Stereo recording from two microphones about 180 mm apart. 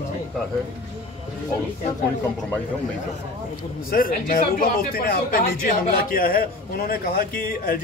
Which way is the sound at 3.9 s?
50° left (ahead or behind).